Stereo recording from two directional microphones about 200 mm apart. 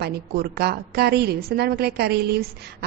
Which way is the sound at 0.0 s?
50° right (ahead or behind).